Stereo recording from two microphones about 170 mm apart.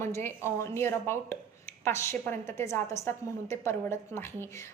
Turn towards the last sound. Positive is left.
turn(degrees=15)  # may be behind; listen again after turning